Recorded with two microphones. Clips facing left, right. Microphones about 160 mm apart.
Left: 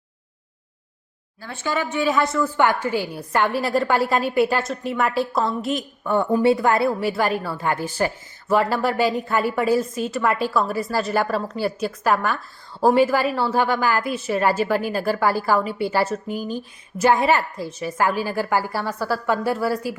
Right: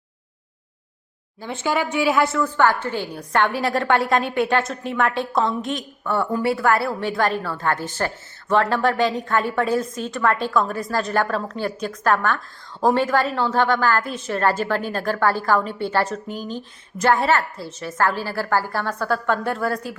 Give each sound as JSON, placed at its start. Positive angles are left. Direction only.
{"t": 1.4, "sound": "a woman's voice", "side_deg": -15}
{"t": 2.6, "sound": "a woman's voice", "side_deg": 10}
{"t": 6.1, "sound": "a woman's voice", "side_deg": 20}
{"t": 7.0, "sound": "a woman's voice", "side_deg": 10}